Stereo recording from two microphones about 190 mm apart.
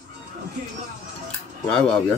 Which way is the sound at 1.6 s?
5° left (ahead or behind).